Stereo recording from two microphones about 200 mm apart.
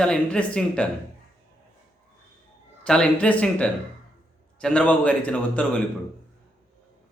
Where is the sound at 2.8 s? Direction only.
5° left (ahead or behind).